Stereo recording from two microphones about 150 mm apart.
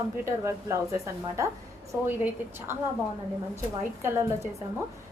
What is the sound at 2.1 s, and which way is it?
Speech, 15° right (ahead or behind).